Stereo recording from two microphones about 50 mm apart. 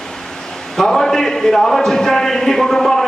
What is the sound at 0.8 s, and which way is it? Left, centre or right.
A man's voice, centre.